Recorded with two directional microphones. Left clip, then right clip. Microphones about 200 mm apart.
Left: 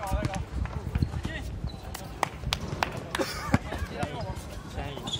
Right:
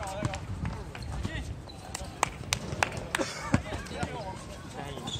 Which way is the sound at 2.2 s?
30° right (ahead or behind).